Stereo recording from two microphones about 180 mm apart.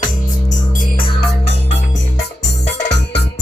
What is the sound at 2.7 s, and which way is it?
Music, 70° left (ahead or behind).